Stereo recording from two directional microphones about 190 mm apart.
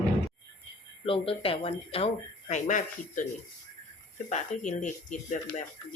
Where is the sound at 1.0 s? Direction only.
30° left (ahead or behind).